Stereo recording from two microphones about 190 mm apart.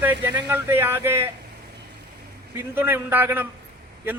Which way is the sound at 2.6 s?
10° right (ahead or behind).